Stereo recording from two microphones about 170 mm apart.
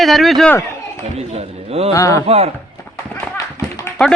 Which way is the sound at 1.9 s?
20° left (ahead or behind).